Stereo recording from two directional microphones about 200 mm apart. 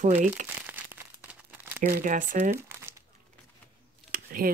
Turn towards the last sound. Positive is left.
turn(degrees=-45)  # may be behind; listen again after turning